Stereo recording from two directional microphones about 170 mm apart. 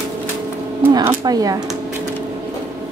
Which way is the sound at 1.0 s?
20° right (ahead or behind).